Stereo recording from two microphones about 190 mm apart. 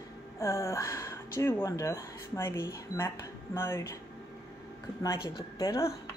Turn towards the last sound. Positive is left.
turn(degrees=15)  # may be behind; listen again after turning